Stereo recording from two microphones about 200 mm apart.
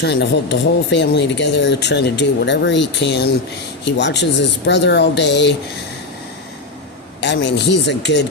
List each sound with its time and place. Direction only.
0.0 s speech: 60° left (ahead or behind)
7.2 s speech: 60° left (ahead or behind)